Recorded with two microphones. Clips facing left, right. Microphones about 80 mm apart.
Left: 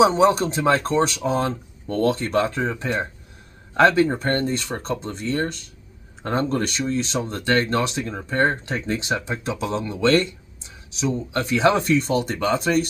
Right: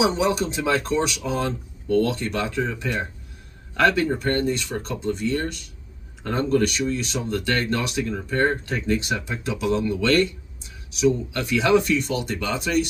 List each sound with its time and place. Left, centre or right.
0.0 s speech: left